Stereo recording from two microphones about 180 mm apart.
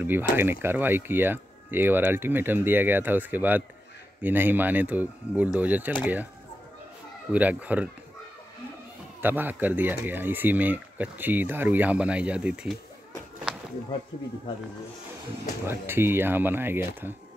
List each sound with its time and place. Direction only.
0.0 s speech: 10° right (ahead or behind)
7.3 s speech: 10° right (ahead or behind)
9.2 s speech: 10° right (ahead or behind)
13.5 s a sound: 5° right (ahead or behind)
15.6 s speech: 15° right (ahead or behind)